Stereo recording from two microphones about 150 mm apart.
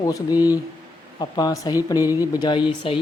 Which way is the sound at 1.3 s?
25° left (ahead or behind).